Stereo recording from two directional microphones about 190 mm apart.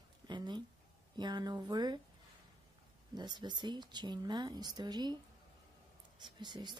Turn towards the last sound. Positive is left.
turn(degrees=-25)  # may be behind; listen again after turning